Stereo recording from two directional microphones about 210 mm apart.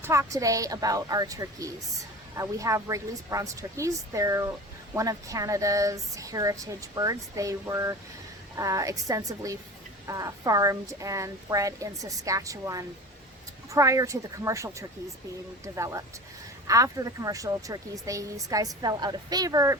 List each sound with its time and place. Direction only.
0.0 s a woman's voice: 15° right (ahead or behind)